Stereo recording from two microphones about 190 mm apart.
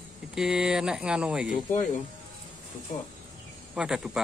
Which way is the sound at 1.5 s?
40° left (ahead or behind).